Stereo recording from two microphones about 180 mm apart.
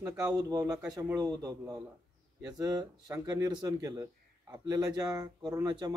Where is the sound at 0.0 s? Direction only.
20° right (ahead or behind).